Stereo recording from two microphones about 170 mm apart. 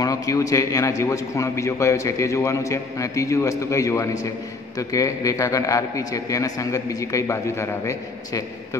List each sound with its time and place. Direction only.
0.0 s a man's voice: 20° left (ahead or behind)